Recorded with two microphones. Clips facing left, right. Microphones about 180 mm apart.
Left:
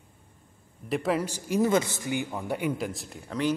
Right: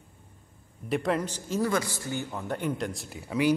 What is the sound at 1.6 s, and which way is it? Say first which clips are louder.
A man's voice: left 4 dB; 20° left (ahead or behind).